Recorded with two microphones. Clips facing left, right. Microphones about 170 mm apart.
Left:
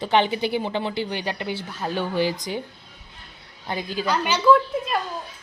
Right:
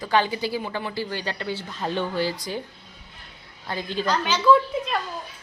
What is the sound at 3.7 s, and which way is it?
A woman's voice, 10° left (ahead or behind).